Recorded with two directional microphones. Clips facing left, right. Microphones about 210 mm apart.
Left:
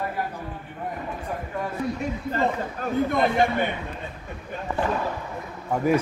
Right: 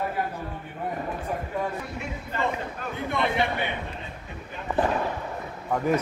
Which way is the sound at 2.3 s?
40° left (ahead or behind).